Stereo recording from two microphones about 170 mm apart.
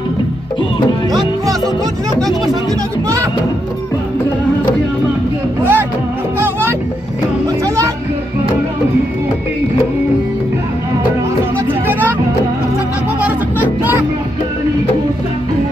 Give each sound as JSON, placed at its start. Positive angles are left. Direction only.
{"t": 5.6, "sound": "music", "side_deg": -10}
{"t": 7.4, "sound": "music", "side_deg": -20}
{"t": 11.9, "sound": "music", "side_deg": -10}
{"t": 13.2, "sound": "music", "side_deg": -10}